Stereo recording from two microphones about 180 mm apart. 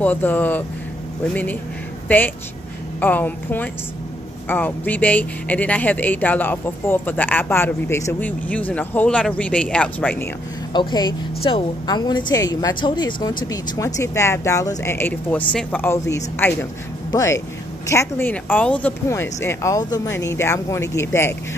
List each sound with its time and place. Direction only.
0.0 s a woman's voice: 10° left (ahead or behind)
10.7 s a woman's voice: 25° left (ahead or behind)